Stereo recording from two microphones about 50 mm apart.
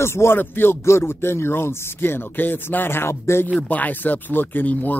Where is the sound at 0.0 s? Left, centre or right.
Left.